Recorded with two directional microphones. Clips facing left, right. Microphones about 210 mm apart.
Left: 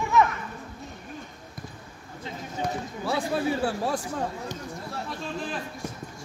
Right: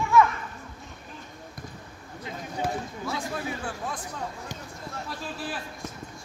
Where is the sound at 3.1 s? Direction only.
35° left (ahead or behind).